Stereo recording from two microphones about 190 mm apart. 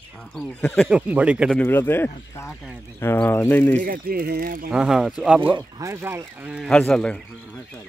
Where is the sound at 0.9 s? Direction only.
5° right (ahead or behind).